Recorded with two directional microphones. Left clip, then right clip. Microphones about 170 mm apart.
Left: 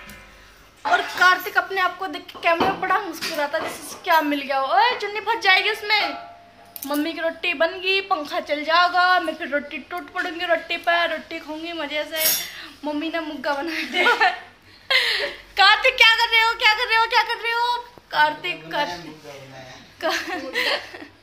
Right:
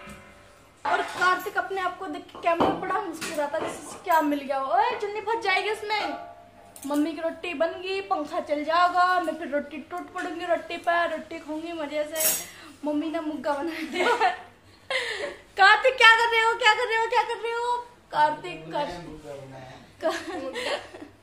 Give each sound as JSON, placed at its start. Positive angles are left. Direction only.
{"t": 1.2, "sound": "a woman's voice", "side_deg": 0}
{"t": 14.9, "sound": "laughter", "side_deg": -10}
{"t": 15.5, "sound": "a woman's voice", "side_deg": -35}
{"t": 18.1, "sound": "a woman's voice", "side_deg": 5}
{"t": 20.0, "sound": "speech", "side_deg": 5}